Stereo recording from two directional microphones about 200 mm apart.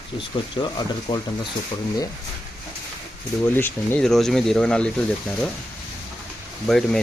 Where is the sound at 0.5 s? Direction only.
20° left (ahead or behind).